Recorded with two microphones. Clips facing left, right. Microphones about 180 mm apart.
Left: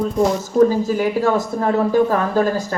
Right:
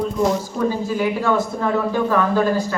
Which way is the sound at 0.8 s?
40° left (ahead or behind).